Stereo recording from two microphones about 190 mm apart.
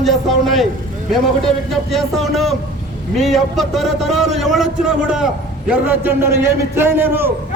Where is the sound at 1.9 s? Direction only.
Centre (ahead or behind).